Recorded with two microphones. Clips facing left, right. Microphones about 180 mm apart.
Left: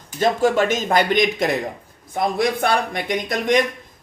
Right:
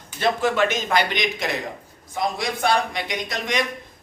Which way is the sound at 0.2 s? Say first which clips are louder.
Left 3 dB; 45° left (ahead or behind).